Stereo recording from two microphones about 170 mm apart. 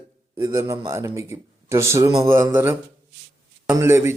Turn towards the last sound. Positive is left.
turn(degrees=-15)  # may be behind; listen again after turning